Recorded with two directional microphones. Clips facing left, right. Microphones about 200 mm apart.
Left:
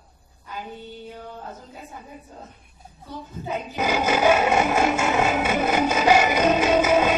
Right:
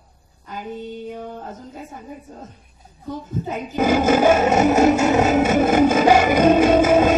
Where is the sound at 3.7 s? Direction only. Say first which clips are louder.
Right 7 dB; 50° right (ahead or behind).